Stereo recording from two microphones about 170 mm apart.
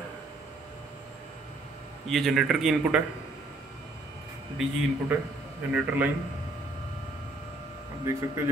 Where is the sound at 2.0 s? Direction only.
Centre (ahead or behind).